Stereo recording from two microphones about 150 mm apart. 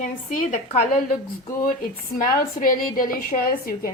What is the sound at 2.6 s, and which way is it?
A woman's voice, 70° left (ahead or behind).